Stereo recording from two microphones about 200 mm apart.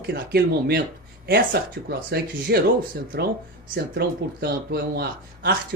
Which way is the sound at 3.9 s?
55° right (ahead or behind).